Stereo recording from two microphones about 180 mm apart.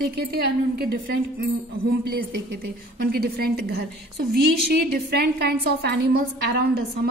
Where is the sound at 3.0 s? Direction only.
60° right (ahead or behind).